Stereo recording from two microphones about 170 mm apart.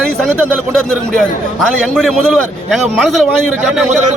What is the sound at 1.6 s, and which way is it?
A man's voice, centre (ahead or behind).